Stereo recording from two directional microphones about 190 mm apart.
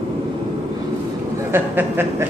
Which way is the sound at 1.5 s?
10° right (ahead or behind).